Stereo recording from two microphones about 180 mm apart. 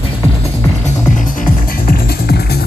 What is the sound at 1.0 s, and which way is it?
Music, 45° left (ahead or behind).